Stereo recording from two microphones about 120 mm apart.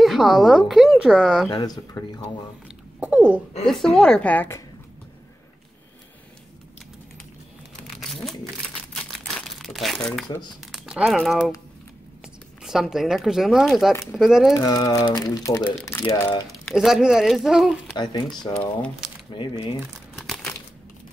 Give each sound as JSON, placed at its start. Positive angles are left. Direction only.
{"t": 0.0, "sound": "a woman's voice", "side_deg": 0}
{"t": 1.5, "sound": "speech", "side_deg": 35}
{"t": 3.0, "sound": "a sound", "side_deg": -15}
{"t": 3.6, "sound": "a woman's voice", "side_deg": 5}
{"t": 8.0, "sound": "a sound", "side_deg": 0}
{"t": 8.9, "sound": "crumpling", "side_deg": 0}
{"t": 10.6, "sound": "a sound", "side_deg": -5}
{"t": 11.1, "sound": "a woman's voice", "side_deg": 0}
{"t": 12.6, "sound": "a woman's voice", "side_deg": -5}
{"t": 14.5, "sound": "speech", "side_deg": 30}
{"t": 16.4, "sound": "a woman's voice", "side_deg": 0}
{"t": 17.9, "sound": "speech", "side_deg": 35}
{"t": 19.3, "sound": "speech", "side_deg": 40}
{"t": 20.2, "sound": "crumpling", "side_deg": 0}